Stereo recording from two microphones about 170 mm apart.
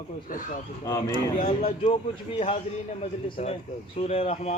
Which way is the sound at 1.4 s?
45° left (ahead or behind).